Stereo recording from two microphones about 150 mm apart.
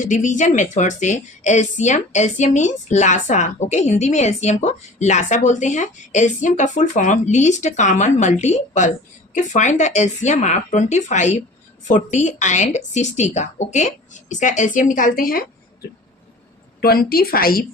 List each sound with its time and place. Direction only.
0.0 s a woman's voice: 55° left (ahead or behind); by 15.4 s 75° left (ahead or behind)
16.8 s speech: 90° left